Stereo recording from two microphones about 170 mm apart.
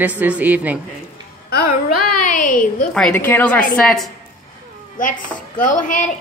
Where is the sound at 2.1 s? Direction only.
50° left (ahead or behind).